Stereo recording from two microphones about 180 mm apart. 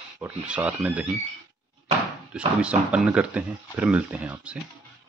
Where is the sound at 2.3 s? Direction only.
5° right (ahead or behind).